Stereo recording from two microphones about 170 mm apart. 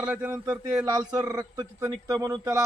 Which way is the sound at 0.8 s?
25° right (ahead or behind).